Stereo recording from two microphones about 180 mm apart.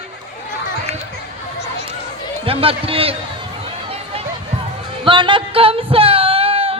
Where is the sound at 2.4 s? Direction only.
30° right (ahead or behind).